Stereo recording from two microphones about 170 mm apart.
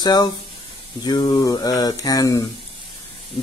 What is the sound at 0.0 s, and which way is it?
Speech, 25° left (ahead or behind).